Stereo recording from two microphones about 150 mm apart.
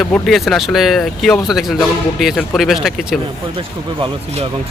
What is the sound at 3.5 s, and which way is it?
Speech, 35° right (ahead or behind).